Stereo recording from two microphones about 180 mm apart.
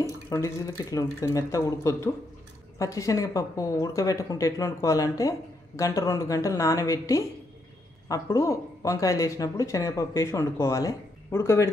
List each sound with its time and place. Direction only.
0.3 s speech: 20° left (ahead or behind)